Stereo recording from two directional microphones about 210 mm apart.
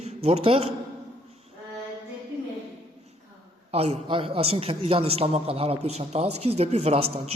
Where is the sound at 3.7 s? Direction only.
30° right (ahead or behind).